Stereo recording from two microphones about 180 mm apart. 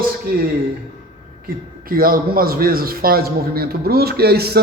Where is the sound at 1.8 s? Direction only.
55° right (ahead or behind).